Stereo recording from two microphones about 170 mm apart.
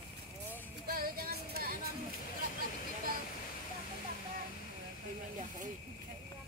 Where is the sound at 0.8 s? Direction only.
60° right (ahead or behind).